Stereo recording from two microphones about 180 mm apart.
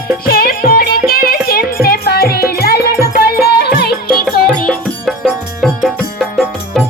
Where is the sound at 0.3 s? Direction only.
55° left (ahead or behind).